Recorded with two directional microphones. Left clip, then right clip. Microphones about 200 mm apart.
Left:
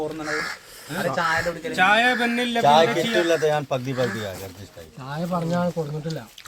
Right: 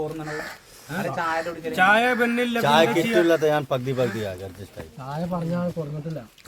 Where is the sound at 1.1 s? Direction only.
40° left (ahead or behind).